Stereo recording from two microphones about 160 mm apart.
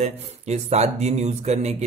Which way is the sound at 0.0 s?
40° right (ahead or behind).